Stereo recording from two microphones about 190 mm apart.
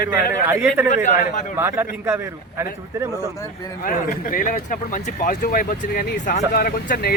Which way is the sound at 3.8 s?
50° left (ahead or behind).